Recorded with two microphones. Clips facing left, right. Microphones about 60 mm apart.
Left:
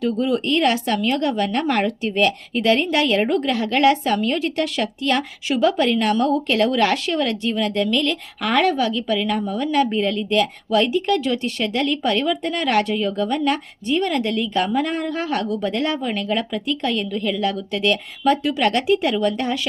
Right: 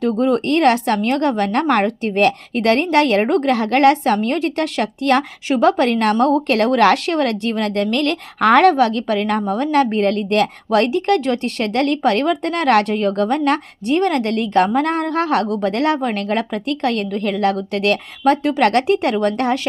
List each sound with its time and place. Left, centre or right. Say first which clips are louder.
0.0 s a woman's voice: right 4 dB; right